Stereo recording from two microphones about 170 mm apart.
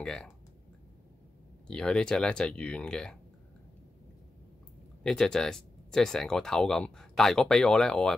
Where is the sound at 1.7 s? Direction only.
5° left (ahead or behind).